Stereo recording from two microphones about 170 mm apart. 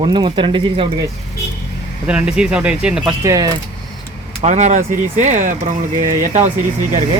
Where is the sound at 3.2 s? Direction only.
20° right (ahead or behind).